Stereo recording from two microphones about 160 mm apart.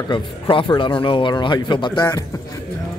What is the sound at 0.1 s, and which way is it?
Speech, 30° left (ahead or behind).